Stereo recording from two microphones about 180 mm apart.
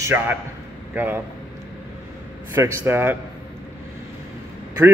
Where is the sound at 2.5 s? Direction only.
10° right (ahead or behind).